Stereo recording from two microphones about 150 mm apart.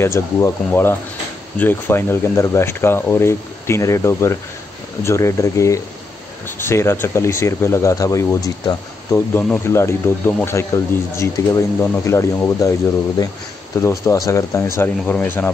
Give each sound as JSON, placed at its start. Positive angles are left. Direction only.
{"t": 0.0, "sound": "speech", "side_deg": 15}
{"t": 13.7, "sound": "speech", "side_deg": 20}